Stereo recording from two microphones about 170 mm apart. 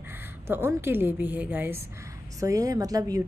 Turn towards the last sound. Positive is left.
turn(degrees=-20)  # may be behind; listen again after turning